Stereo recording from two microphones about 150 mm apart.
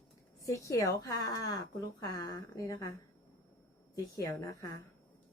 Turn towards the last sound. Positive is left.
turn(degrees=20)  # may be behind; listen again after turning